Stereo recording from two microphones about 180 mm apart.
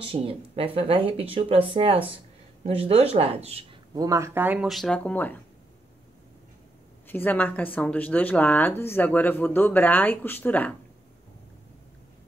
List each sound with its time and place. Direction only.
0.0 s speech: 30° right (ahead or behind)
3.9 s speech: 20° right (ahead or behind); by 5.4 s 10° left (ahead or behind)
7.1 s speech: 10° left (ahead or behind)